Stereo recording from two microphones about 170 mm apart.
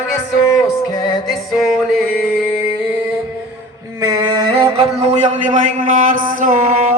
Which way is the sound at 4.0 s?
25° right (ahead or behind).